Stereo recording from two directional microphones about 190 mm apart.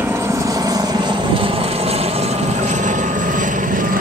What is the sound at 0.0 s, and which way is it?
Vehicle, 15° right (ahead or behind).